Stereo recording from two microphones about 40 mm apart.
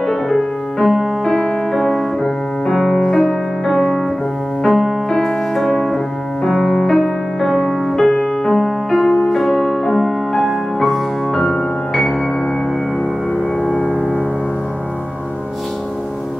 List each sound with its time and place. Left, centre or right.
0.0 s music: centre
0.7 s music: centre
1.2 s music: centre
2.2 s music: left
4.6 s music: centre
5.1 s music: centre
6.5 s music: left
7.0 s music: centre